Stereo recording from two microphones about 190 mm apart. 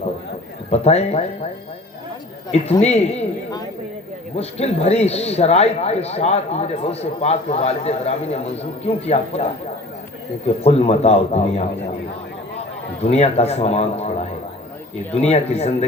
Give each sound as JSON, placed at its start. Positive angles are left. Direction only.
{"t": 0.7, "sound": "speech", "side_deg": 35}
{"t": 2.8, "sound": "speech", "side_deg": 35}
{"t": 4.4, "sound": "speech", "side_deg": 35}
{"t": 10.6, "sound": "speech", "side_deg": 35}
{"t": 13.0, "sound": "speech", "side_deg": 35}